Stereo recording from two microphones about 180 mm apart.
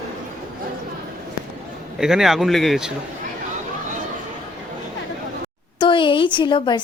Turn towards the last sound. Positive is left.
turn(degrees=25)  # may be behind; listen again after turning